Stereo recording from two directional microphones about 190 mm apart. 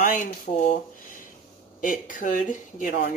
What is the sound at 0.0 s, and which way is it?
Speech, 45° left (ahead or behind).